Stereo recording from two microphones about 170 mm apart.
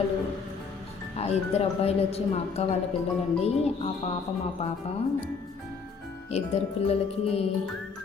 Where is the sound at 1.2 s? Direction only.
40° left (ahead or behind).